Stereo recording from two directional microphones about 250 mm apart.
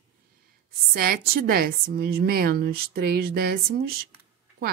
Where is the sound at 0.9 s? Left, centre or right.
Right.